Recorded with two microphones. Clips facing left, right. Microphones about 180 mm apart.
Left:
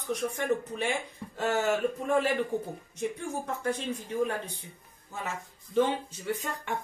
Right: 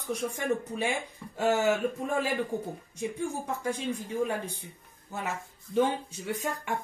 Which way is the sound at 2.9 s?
10° right (ahead or behind).